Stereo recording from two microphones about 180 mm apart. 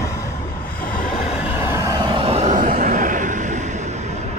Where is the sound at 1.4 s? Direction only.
10° right (ahead or behind); by 3.8 s 40° right (ahead or behind).